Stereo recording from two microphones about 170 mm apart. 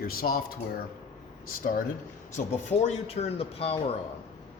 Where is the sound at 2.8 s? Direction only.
35° left (ahead or behind).